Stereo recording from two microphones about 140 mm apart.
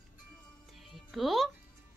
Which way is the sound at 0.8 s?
Centre (ahead or behind).